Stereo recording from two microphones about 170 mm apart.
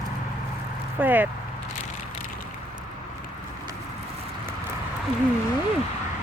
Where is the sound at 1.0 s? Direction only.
10° right (ahead or behind).